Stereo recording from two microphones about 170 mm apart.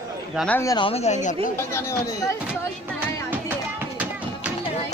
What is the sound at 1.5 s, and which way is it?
Speech, 20° left (ahead or behind).